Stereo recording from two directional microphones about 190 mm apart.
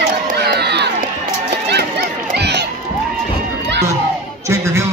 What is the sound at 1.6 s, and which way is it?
Run, 60° right (ahead or behind).